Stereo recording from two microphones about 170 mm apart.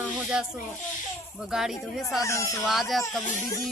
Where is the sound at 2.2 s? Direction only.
20° left (ahead or behind).